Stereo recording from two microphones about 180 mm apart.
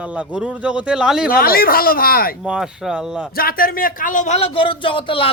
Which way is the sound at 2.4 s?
5° right (ahead or behind).